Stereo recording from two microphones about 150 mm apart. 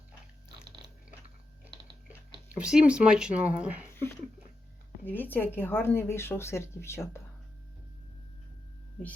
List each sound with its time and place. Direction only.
1.6 s biting: 10° right (ahead or behind)
2.6 s speech: 5° right (ahead or behind)
5.0 s speech: 15° left (ahead or behind)